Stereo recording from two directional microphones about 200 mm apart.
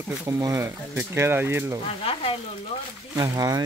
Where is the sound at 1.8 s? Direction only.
30° left (ahead or behind).